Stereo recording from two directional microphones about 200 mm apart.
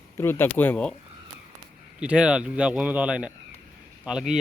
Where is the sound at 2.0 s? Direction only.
5° right (ahead or behind).